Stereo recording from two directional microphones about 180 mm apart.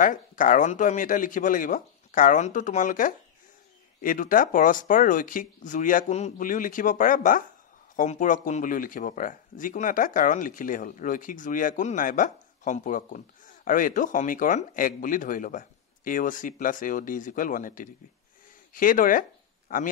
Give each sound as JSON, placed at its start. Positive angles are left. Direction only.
{"t": 0.0, "sound": "speech", "side_deg": 45}